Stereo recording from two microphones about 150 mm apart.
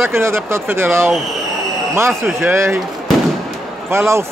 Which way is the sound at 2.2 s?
15° right (ahead or behind).